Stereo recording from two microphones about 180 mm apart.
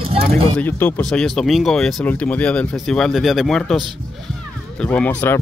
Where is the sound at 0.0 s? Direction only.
30° right (ahead or behind).